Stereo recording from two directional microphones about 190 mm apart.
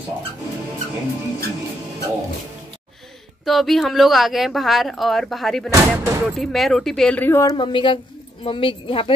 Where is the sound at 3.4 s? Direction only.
Centre (ahead or behind).